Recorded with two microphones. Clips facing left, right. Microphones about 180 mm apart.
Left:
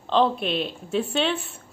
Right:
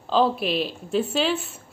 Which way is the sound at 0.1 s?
5° right (ahead or behind).